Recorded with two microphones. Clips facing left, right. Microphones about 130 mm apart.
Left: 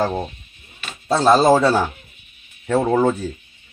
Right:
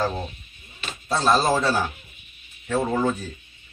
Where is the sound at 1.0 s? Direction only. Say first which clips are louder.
Left 7 dB; 60° left (ahead or behind).